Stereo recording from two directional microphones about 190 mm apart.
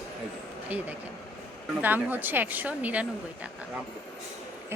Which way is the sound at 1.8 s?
10° right (ahead or behind).